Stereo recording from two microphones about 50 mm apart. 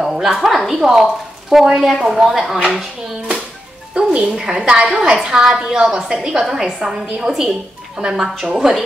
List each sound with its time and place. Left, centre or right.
0.0 s a sound: centre
0.4 s a woman's voice: centre
3.9 s a woman's voice: centre